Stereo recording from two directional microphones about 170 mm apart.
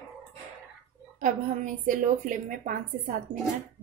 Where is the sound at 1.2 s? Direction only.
50° right (ahead or behind).